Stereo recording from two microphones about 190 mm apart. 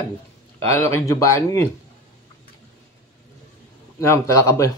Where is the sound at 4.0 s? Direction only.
15° left (ahead or behind).